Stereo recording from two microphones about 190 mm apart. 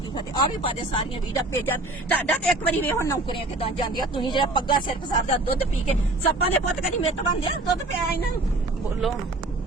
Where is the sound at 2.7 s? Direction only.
15° left (ahead or behind).